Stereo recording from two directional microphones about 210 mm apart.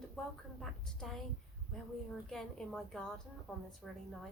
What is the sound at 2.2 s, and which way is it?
A woman's voice, centre (ahead or behind).